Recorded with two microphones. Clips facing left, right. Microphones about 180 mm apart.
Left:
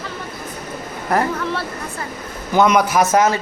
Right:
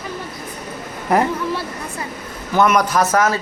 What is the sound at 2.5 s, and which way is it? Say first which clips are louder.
Speech: left 1 dB; 15° left (ahead or behind).